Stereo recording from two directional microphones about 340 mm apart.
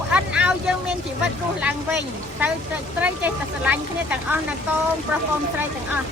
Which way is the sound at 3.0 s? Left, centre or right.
Centre.